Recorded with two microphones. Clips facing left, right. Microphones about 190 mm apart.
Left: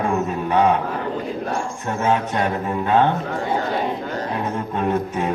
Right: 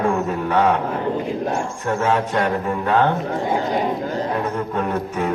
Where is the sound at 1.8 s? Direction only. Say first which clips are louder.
Right 1 dB; 20° left (ahead or behind).